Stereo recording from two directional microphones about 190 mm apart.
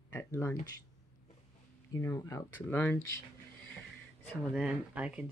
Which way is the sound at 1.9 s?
15° left (ahead or behind).